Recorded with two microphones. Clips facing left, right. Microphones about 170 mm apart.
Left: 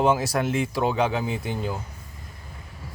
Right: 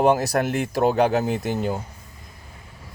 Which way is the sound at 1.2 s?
65° right (ahead or behind).